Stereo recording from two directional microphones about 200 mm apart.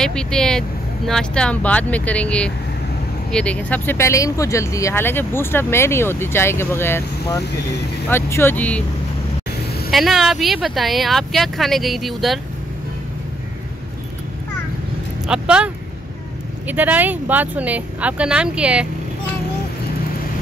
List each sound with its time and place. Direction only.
0.0 s speech: 5° left (ahead or behind)
9.8 s speech: centre (ahead or behind)
15.2 s speech: 5° right (ahead or behind)